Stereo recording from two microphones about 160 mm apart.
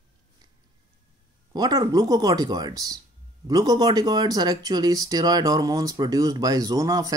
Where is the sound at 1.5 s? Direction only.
25° right (ahead or behind).